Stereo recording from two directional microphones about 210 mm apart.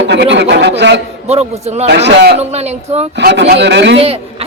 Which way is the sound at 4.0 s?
30° right (ahead or behind).